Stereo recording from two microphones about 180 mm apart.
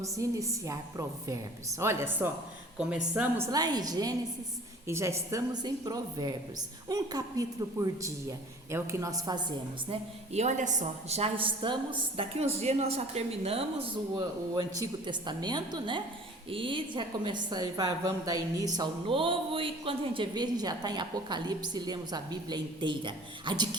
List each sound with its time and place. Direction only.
0.0 s a woman's voice: 15° right (ahead or behind)
9.9 s a woman's voice: 40° right (ahead or behind)
14.5 s a woman's voice: 25° right (ahead or behind)